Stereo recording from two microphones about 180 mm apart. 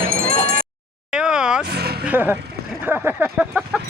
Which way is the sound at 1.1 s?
5° right (ahead or behind).